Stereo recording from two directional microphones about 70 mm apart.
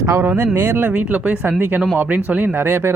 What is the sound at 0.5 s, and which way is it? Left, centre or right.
Speech, right.